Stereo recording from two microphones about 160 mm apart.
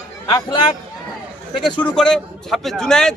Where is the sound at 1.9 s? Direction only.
5° left (ahead or behind).